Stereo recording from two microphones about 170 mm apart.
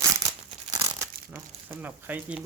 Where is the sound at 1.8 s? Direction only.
10° right (ahead or behind).